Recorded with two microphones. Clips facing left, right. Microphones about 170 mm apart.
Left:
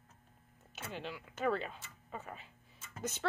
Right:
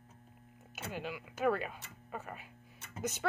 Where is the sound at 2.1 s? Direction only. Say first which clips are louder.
Right 2 dB; 10° right (ahead or behind).